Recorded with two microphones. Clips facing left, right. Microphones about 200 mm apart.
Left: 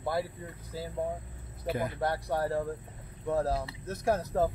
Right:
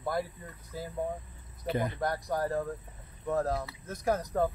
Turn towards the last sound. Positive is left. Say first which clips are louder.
# left 1 dB
turn(degrees=30)  # may be behind; listen again after turning